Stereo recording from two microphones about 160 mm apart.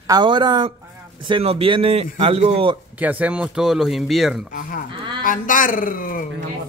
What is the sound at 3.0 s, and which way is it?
Speech, 10° right (ahead or behind).